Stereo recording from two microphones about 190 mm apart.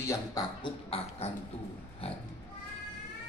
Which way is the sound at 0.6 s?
30° left (ahead or behind).